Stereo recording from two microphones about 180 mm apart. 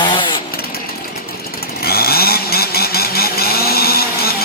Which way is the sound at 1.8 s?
60° left (ahead or behind).